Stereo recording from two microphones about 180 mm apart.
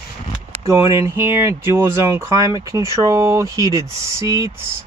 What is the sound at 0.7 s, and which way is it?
Speech, 15° right (ahead or behind).